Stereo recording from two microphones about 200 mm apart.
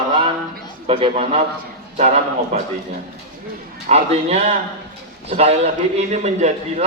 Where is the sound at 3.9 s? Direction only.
30° right (ahead or behind).